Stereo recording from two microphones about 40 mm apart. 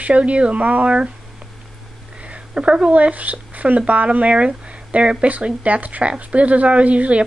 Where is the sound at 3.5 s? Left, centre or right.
Right.